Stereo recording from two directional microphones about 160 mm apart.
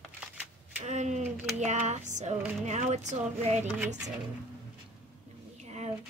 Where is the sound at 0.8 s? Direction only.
45° right (ahead or behind).